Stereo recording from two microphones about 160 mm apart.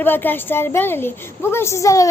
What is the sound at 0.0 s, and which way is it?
A woman's voice, 10° left (ahead or behind).